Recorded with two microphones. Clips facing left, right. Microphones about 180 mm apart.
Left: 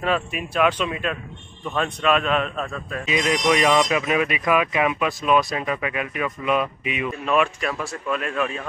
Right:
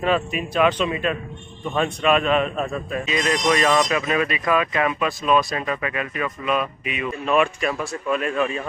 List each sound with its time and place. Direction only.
0.0 s speech: centre (ahead or behind)
3.1 s speech: 15° left (ahead or behind)
7.1 s speech: centre (ahead or behind)